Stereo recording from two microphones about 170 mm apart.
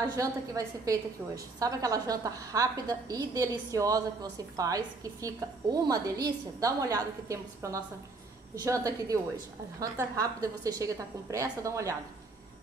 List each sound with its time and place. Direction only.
0.1 s a woman's voice: 20° right (ahead or behind)